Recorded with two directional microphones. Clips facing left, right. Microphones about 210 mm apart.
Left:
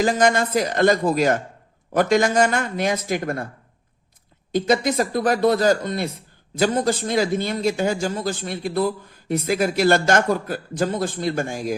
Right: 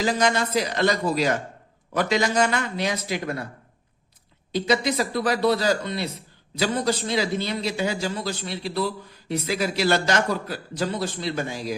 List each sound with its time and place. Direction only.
0.0 s a man's voice: 50° left (ahead or behind)
4.5 s a man's voice: 50° left (ahead or behind)